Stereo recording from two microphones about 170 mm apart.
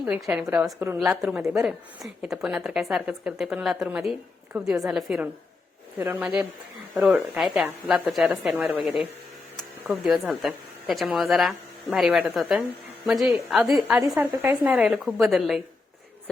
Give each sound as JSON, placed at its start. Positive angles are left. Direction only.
{"t": 0.0, "sound": "a woman's voice", "side_deg": -5}